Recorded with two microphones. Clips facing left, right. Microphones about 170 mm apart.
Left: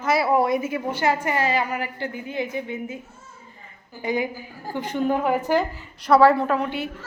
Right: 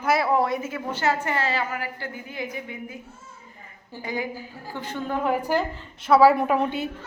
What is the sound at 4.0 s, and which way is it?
A woman's voice, 20° left (ahead or behind).